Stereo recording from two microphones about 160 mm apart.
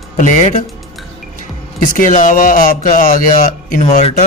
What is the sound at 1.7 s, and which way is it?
A man's voice, 55° left (ahead or behind).